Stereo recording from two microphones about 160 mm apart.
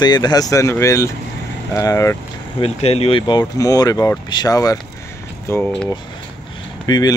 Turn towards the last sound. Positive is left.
turn(degrees=25)  # may be behind; listen again after turning